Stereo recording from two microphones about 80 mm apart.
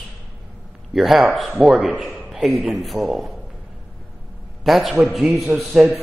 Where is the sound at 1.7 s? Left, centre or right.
Centre.